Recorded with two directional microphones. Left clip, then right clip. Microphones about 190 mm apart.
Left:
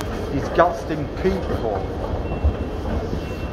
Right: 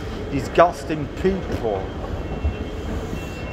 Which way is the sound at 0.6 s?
30° right (ahead or behind).